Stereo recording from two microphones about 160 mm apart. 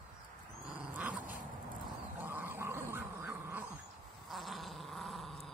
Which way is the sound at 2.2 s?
10° right (ahead or behind).